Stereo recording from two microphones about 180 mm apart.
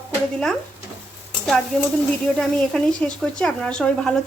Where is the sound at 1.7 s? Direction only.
5° left (ahead or behind).